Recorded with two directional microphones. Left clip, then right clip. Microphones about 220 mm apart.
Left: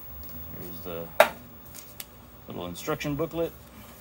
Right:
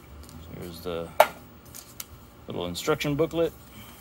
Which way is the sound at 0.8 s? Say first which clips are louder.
Right 5 dB; 45° right (ahead or behind).